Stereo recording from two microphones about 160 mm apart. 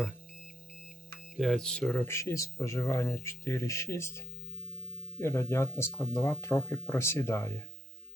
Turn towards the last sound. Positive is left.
turn(degrees=15)  # may be behind; listen again after turning